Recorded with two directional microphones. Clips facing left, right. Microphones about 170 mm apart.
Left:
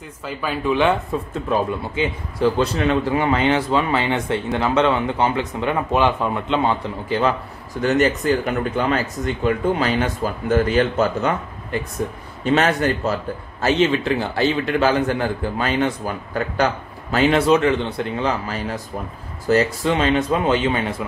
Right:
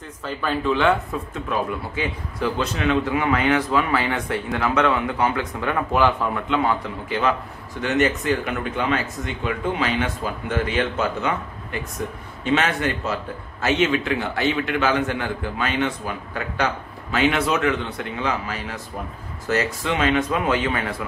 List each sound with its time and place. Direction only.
0.2 s speech: 10° left (ahead or behind)
1.5 s a man's voice: 30° left (ahead or behind)